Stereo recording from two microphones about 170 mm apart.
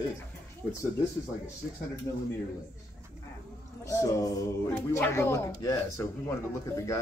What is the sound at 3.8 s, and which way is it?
A man's voice, 20° left (ahead or behind).